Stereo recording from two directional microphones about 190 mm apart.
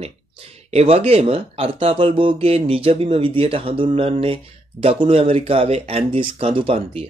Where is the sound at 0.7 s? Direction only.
30° right (ahead or behind).